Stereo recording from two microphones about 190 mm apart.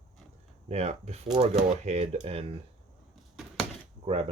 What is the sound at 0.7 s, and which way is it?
Speech, 35° right (ahead or behind).